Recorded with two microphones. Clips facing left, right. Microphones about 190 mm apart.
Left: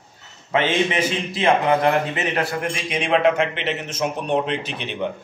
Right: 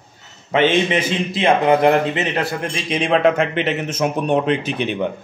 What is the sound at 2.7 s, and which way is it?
A man's voice, 35° right (ahead or behind).